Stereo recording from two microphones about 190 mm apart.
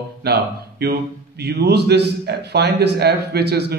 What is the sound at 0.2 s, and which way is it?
A man's voice, 55° right (ahead or behind).